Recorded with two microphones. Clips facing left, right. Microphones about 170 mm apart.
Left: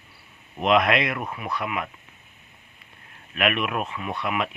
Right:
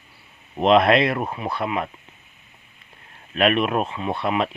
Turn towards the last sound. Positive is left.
turn(degrees=-30)  # may be behind; listen again after turning